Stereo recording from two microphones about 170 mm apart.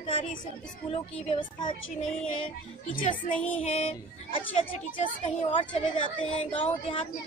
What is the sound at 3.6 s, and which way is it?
Speech, 40° left (ahead or behind).